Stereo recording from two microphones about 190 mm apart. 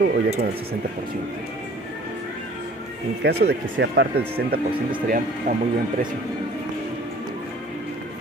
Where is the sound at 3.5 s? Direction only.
65° right (ahead or behind).